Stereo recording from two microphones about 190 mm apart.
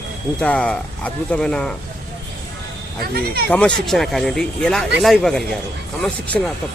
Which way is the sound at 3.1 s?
55° right (ahead or behind).